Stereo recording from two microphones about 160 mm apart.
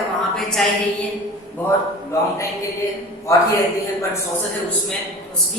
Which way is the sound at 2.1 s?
20° left (ahead or behind).